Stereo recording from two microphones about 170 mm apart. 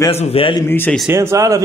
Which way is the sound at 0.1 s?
35° left (ahead or behind).